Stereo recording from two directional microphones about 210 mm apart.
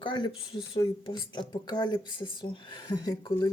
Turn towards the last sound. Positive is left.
turn(degrees=20)  # may be behind; listen again after turning